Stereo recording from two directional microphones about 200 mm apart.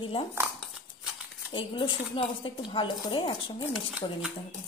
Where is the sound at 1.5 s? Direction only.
25° left (ahead or behind).